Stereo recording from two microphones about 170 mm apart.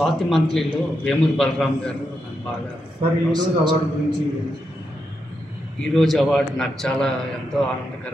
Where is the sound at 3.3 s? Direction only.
25° right (ahead or behind).